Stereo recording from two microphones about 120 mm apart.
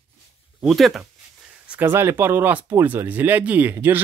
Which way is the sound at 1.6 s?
15° right (ahead or behind).